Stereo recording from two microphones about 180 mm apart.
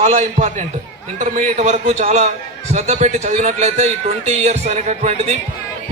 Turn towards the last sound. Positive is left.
turn(degrees=-40)  # may be behind; listen again after turning